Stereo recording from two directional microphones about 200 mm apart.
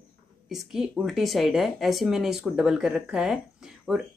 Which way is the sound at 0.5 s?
Centre (ahead or behind).